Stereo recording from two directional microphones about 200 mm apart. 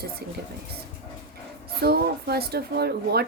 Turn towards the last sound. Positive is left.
turn(degrees=-55)  # may be behind; listen again after turning